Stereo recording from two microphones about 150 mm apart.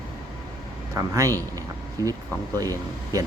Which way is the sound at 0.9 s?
20° right (ahead or behind).